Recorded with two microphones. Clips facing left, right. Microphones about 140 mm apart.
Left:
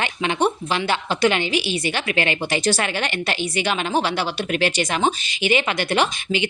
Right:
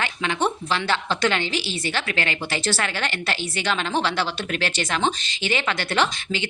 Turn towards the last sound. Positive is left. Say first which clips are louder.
# left 3 dB
turn(degrees=15)  # may be behind; listen again after turning